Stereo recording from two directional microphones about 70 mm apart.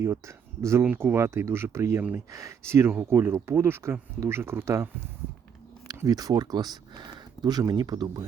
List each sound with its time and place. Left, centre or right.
0.0 s speech: right
2.0 s speech: right
2.3 s speech: right
6.1 s speech: right